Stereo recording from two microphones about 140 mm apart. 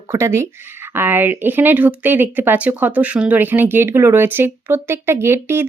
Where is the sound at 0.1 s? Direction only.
20° right (ahead or behind).